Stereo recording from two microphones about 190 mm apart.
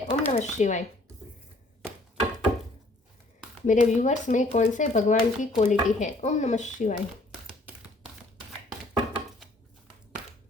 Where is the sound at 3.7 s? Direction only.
40° left (ahead or behind).